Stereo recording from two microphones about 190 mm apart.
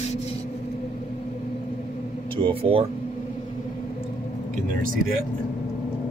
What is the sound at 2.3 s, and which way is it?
Speech, 30° right (ahead or behind).